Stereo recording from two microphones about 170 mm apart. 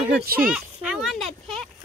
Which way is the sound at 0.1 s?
60° right (ahead or behind).